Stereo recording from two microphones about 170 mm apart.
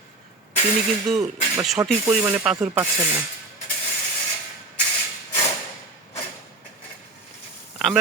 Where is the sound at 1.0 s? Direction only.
Centre (ahead or behind).